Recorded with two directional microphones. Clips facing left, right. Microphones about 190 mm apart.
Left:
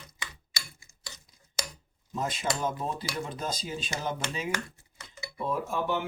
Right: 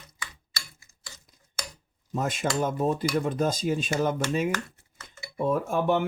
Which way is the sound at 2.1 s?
50° right (ahead or behind).